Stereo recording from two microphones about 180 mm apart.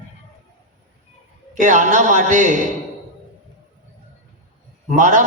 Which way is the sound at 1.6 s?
45° right (ahead or behind).